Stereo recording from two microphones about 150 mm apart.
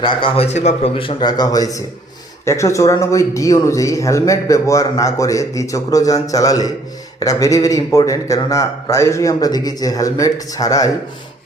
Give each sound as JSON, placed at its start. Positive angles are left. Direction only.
{"t": 0.0, "sound": "a man's voice", "side_deg": 35}